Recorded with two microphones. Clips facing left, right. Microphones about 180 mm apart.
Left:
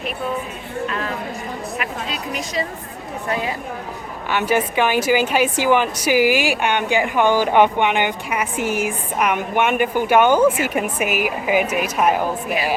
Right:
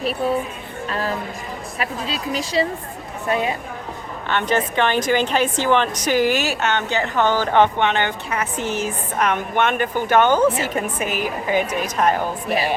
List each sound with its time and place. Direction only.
0.9 s a sound: 35° right (ahead or behind)
1.8 s speech: 30° right (ahead or behind)
4.3 s a woman's voice: 10° left (ahead or behind)